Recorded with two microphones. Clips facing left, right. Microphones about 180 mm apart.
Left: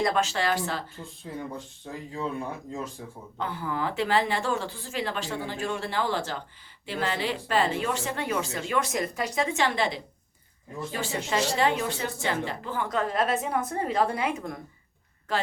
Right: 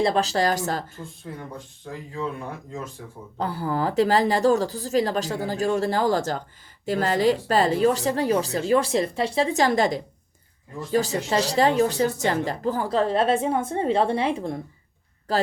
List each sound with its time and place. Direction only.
0.0 s a woman's voice: 35° right (ahead or behind)
3.3 s a woman's voice: 35° right (ahead or behind)